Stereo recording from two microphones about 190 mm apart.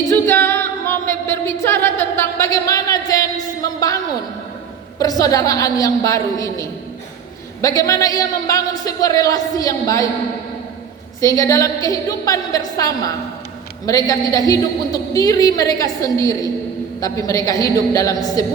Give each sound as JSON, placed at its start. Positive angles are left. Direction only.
{"t": 0.1, "sound": "a capella", "side_deg": 10}
{"t": 3.6, "sound": "a woman's voice", "side_deg": 20}
{"t": 11.2, "sound": "a woman's voice", "side_deg": 15}